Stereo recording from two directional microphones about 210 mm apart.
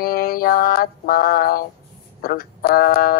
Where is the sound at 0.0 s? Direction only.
45° left (ahead or behind).